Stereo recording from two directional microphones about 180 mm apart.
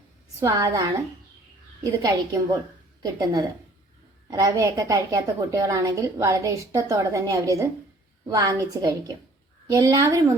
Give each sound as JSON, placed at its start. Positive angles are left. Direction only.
{"t": 0.3, "sound": "a woman's voice", "side_deg": -15}